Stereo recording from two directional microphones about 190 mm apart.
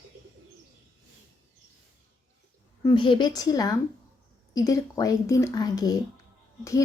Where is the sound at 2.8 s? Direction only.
25° left (ahead or behind).